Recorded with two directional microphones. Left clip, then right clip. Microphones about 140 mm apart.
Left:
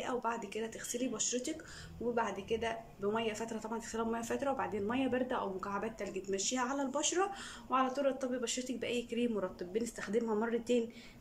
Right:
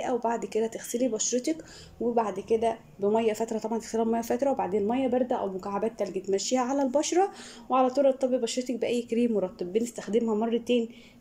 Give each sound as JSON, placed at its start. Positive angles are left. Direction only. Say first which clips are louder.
{"t": 0.0, "sound": "speech", "louder": "right 9 dB", "side_deg": -45}